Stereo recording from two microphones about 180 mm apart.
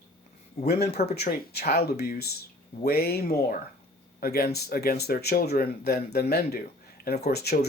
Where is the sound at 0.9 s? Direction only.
60° left (ahead or behind).